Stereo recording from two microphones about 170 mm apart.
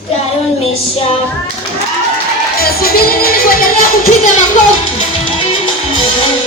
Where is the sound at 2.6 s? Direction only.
60° left (ahead or behind).